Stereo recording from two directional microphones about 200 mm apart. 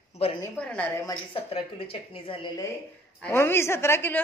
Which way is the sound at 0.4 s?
5° left (ahead or behind).